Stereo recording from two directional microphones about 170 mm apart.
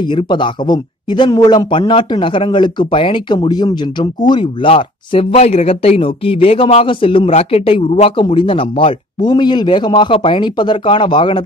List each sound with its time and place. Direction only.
0.0 s speech: 30° left (ahead or behind)